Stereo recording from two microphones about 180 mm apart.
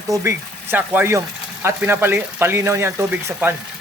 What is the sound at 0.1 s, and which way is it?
Speech, 15° right (ahead or behind).